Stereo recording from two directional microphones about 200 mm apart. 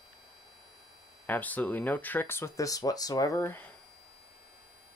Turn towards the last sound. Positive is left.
turn(degrees=10)  # may be behind; listen again after turning